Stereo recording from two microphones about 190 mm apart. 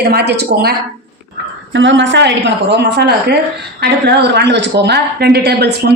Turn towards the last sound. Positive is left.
turn(degrees=-60)  # may be behind; listen again after turning